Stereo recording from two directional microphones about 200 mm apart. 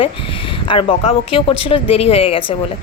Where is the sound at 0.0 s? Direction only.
25° left (ahead or behind).